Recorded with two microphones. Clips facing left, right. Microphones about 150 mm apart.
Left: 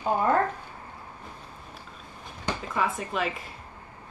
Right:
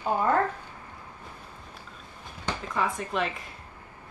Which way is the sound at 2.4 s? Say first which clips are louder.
Left 1 dB; 15° left (ahead or behind).